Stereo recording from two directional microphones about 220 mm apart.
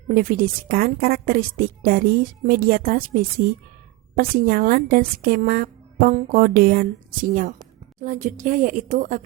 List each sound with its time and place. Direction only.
0.1 s a woman's voice: 40° right (ahead or behind)